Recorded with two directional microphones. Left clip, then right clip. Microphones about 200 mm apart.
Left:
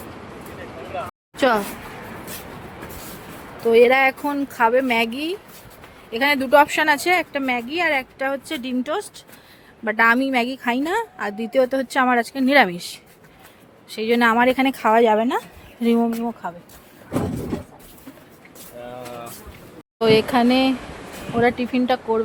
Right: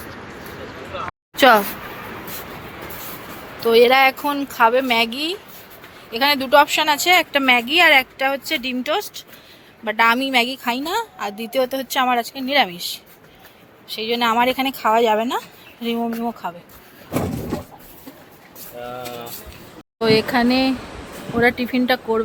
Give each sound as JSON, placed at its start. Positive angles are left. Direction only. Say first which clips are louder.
{"t": 1.4, "sound": "speech", "louder": "right 6 dB", "side_deg": -5}
{"t": 3.7, "sound": "a woman's voice", "louder": "right 1 dB", "side_deg": 15}
{"t": 7.3, "sound": "speech", "louder": "right 8 dB", "side_deg": 0}
{"t": 8.2, "sound": "a woman's voice", "louder": "right 4 dB", "side_deg": 15}
{"t": 13.8, "sound": "a woman's voice", "louder": "left 2 dB", "side_deg": 35}
{"t": 16.4, "sound": "speech", "louder": "right 2 dB", "side_deg": 15}
{"t": 20.0, "sound": "speech", "louder": "even", "side_deg": 10}